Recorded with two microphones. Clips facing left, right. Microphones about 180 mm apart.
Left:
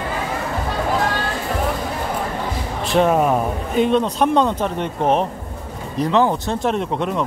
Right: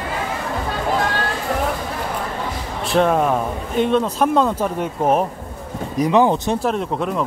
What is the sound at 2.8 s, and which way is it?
A man's voice, 5° left (ahead or behind).